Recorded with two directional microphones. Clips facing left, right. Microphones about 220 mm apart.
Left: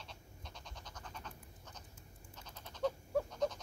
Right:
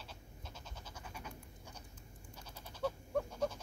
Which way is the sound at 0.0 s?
5° right (ahead or behind).